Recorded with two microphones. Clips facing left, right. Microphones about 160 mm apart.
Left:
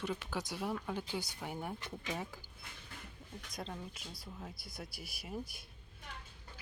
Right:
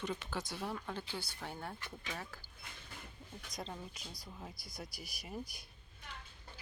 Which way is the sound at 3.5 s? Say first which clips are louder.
Left 1 dB; centre (ahead or behind).